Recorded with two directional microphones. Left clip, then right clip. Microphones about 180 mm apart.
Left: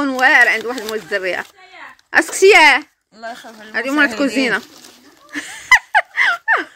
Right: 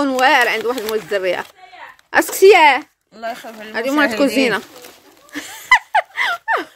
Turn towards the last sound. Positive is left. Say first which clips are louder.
# left 3 dB
turn(degrees=-10)  # may be behind; listen again after turning